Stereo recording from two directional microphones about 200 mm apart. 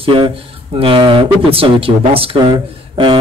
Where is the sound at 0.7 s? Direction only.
25° right (ahead or behind).